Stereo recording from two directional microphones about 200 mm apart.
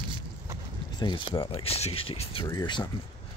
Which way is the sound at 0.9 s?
20° left (ahead or behind).